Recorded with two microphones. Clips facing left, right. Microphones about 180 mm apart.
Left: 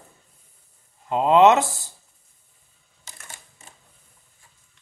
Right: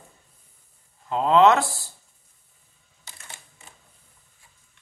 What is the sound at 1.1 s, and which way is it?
Speech, 20° left (ahead or behind).